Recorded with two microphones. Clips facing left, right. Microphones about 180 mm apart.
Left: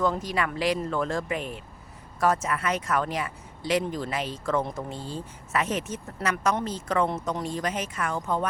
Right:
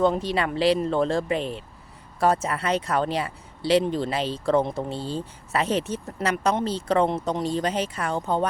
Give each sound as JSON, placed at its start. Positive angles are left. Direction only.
{"t": 0.0, "sound": "speech", "side_deg": -30}